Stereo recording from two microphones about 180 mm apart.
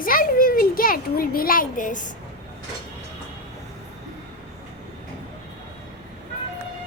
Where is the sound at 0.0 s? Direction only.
50° left (ahead or behind).